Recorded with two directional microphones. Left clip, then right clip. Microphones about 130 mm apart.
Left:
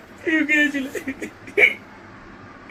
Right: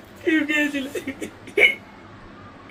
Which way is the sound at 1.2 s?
20° right (ahead or behind).